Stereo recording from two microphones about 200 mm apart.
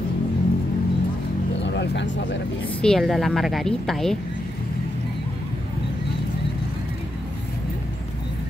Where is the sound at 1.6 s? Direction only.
60° left (ahead or behind).